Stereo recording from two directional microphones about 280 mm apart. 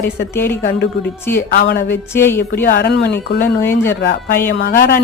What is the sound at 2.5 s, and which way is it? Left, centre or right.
Speech, left.